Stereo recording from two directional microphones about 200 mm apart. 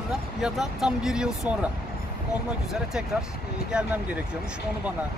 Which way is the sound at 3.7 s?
5° right (ahead or behind).